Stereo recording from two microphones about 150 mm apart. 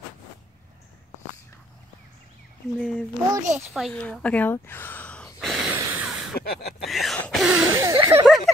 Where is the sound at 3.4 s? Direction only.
55° right (ahead or behind).